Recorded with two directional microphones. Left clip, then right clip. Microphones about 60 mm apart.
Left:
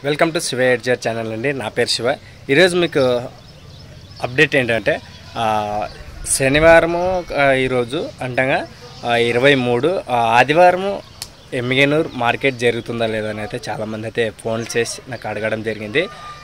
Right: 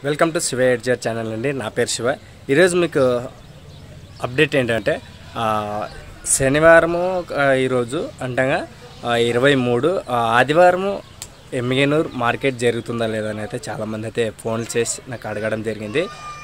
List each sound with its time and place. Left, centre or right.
0.0 s speech: centre
4.2 s a man's voice: right
11.7 s a man's voice: right
15.2 s speech: centre